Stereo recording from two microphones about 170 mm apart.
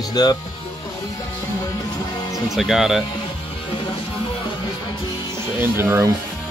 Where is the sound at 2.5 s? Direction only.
Centre (ahead or behind).